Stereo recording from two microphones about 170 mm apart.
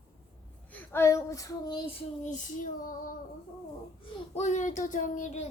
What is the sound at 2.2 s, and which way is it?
Female singing, 50° left (ahead or behind).